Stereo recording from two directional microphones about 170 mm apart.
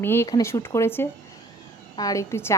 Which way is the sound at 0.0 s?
15° left (ahead or behind).